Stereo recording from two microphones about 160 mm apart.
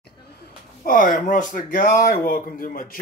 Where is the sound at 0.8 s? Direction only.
60° left (ahead or behind).